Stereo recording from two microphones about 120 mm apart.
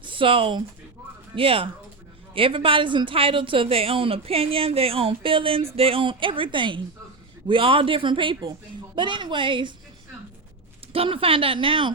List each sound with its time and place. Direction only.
0.0 s a woman's voice: 45° right (ahead or behind)
10.9 s speech: 50° right (ahead or behind)